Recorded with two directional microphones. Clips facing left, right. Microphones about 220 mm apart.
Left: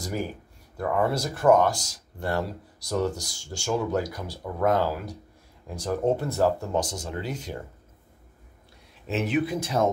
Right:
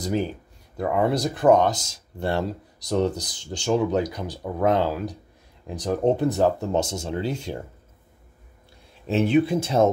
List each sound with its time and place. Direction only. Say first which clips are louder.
0.0 s speech: right 5 dB; 20° right (ahead or behind)
9.0 s speech: right 6 dB; 30° right (ahead or behind)